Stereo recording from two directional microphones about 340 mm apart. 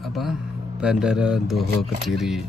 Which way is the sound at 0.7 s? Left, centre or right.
Centre.